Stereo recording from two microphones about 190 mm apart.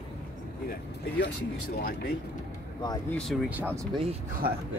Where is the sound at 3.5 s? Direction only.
10° right (ahead or behind).